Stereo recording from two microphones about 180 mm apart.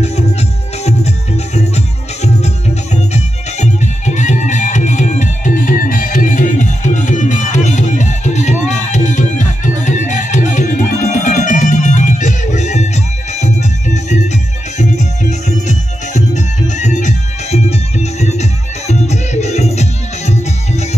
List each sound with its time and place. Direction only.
0.0 s music: 35° left (ahead or behind)